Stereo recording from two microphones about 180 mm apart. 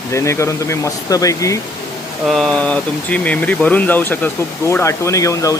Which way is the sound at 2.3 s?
Centre (ahead or behind).